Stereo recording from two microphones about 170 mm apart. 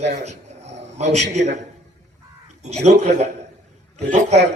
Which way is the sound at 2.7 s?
40° right (ahead or behind).